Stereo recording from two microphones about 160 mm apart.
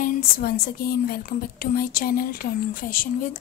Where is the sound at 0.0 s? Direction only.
65° left (ahead or behind).